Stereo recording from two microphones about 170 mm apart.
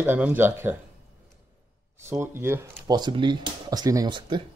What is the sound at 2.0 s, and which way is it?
Speech, 15° right (ahead or behind).